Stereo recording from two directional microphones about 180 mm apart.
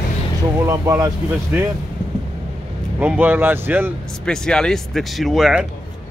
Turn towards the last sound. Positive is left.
turn(degrees=-5)  # may be behind; listen again after turning